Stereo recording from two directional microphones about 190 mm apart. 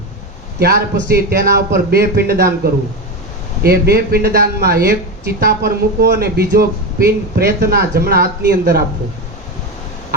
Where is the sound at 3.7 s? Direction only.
55° right (ahead or behind).